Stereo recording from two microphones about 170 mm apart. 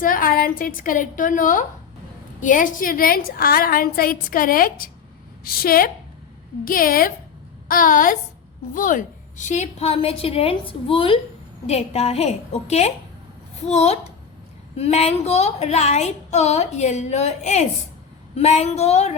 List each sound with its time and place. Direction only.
0.0 s a woman's voice: 55° left (ahead or behind)